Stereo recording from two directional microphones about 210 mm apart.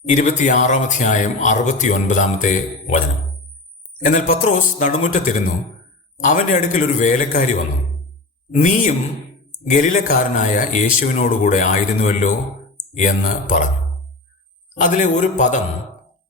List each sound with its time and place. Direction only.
0.1 s speech: 35° left (ahead or behind)
4.0 s speech: 40° left (ahead or behind)
14.8 s speech: 35° left (ahead or behind)